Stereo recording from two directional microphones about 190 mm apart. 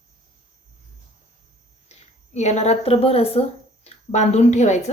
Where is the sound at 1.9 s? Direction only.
35° left (ahead or behind).